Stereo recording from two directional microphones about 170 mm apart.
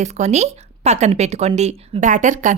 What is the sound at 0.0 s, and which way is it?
A woman's voice, 40° right (ahead or behind).